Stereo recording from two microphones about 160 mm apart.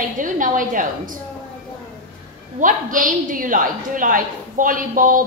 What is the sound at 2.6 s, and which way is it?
A woman's voice, 55° right (ahead or behind).